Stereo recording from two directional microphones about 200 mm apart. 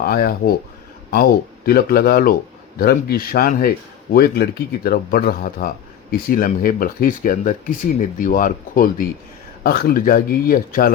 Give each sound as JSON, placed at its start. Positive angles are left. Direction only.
{"t": 0.0, "sound": "a man's voice", "side_deg": 50}